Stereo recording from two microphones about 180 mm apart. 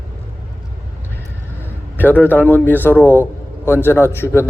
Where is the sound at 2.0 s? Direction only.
10° left (ahead or behind).